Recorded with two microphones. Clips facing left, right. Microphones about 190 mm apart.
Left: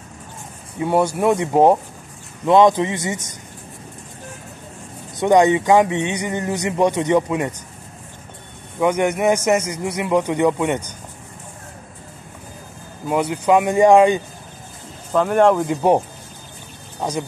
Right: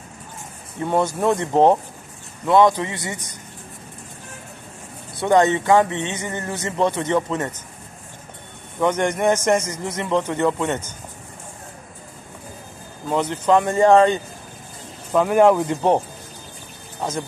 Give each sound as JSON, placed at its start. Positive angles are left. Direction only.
{"t": 0.7, "sound": "speech", "side_deg": 10}
{"t": 5.1, "sound": "speech", "side_deg": 15}
{"t": 8.7, "sound": "speech", "side_deg": 10}
{"t": 13.1, "sound": "speech", "side_deg": 10}
{"t": 15.1, "sound": "speech", "side_deg": -5}